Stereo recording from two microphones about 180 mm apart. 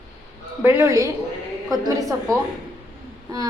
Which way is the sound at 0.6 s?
10° right (ahead or behind).